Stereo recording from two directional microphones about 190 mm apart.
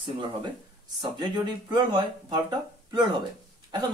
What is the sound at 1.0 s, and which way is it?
Speech, 25° right (ahead or behind).